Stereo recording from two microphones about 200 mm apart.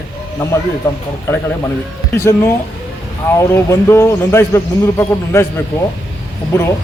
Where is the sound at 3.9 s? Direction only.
15° left (ahead or behind).